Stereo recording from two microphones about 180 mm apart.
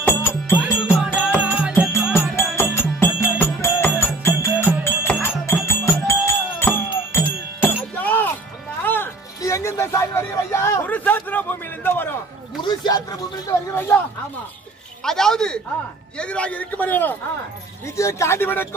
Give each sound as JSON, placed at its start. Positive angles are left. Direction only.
{"t": 0.0, "sound": "music", "side_deg": 10}
{"t": 0.6, "sound": "music", "side_deg": -5}
{"t": 2.3, "sound": "music", "side_deg": 15}
{"t": 12.6, "sound": "a sound", "side_deg": 20}
{"t": 13.7, "sound": "a sound", "side_deg": 10}
{"t": 15.0, "sound": "a man's voice", "side_deg": 5}